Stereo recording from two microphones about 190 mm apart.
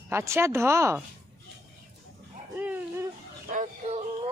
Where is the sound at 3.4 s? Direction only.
40° right (ahead or behind).